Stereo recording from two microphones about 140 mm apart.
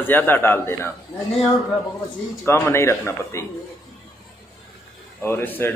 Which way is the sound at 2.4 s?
20° left (ahead or behind).